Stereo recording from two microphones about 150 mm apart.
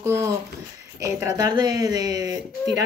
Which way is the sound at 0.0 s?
15° right (ahead or behind).